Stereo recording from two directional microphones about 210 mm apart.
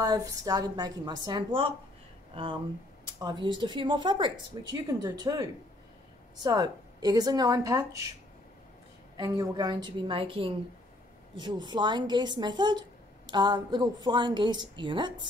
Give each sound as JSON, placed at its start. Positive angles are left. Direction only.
{"t": 0.0, "sound": "a woman's voice", "side_deg": -15}
{"t": 9.1, "sound": "a woman's voice", "side_deg": -20}